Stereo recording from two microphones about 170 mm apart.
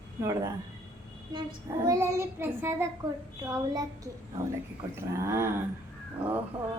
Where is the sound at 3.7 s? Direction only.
20° right (ahead or behind).